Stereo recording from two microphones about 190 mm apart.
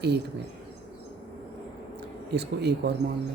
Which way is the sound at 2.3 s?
60° right (ahead or behind).